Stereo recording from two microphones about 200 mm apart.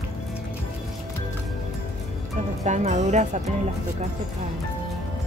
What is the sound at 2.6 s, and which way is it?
Speech, 35° right (ahead or behind).